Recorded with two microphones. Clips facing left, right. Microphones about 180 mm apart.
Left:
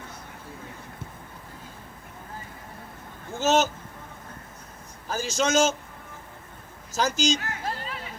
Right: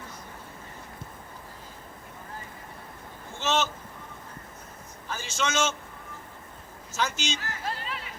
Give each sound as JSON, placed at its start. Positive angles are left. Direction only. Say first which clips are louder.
{"t": 3.3, "sound": "a sound", "louder": "left 5 dB", "side_deg": 40}
{"t": 5.0, "sound": "a man's voice", "louder": "left 5 dB", "side_deg": 40}
{"t": 6.9, "sound": "speech", "louder": "left 6 dB", "side_deg": 40}
{"t": 7.3, "sound": "speech", "louder": "left 4 dB", "side_deg": 60}